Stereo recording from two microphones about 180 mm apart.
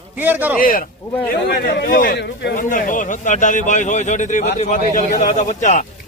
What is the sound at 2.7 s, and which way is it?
Speech, 45° left (ahead or behind).